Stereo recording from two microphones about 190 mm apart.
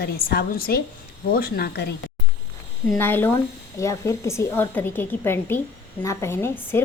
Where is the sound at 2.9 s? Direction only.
10° left (ahead or behind).